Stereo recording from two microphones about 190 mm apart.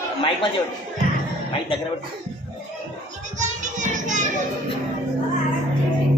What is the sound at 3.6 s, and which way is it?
Child singing, 40° right (ahead or behind).